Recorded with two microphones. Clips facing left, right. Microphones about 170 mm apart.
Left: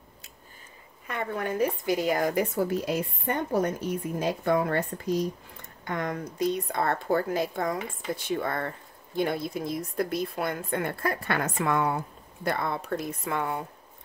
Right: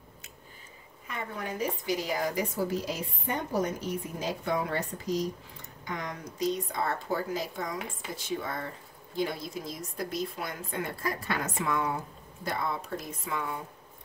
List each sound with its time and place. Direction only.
1.0 s speech: 60° left (ahead or behind)